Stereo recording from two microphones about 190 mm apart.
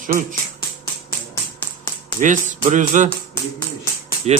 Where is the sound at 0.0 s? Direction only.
45° right (ahead or behind).